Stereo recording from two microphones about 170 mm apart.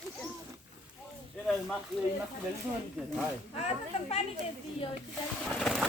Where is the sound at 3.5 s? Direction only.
40° left (ahead or behind).